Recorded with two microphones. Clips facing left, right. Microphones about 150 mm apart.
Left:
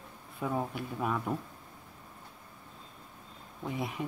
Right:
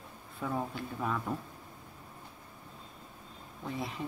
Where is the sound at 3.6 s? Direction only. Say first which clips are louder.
Left 2 dB; 15° left (ahead or behind).